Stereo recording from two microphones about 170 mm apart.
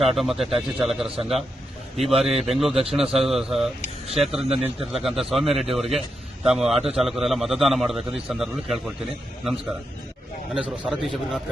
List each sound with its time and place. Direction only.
0.2 s a man's voice: centre (ahead or behind)
1.0 s a man's voice: 35° right (ahead or behind)
2.0 s a man's voice: centre (ahead or behind)